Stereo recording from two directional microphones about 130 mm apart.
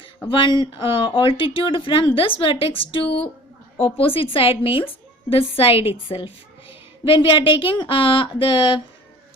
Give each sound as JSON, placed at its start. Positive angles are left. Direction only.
{"t": 0.3, "sound": "a woman's voice", "side_deg": 40}